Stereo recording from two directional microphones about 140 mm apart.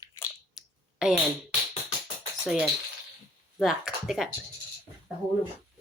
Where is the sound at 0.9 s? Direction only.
5° right (ahead or behind).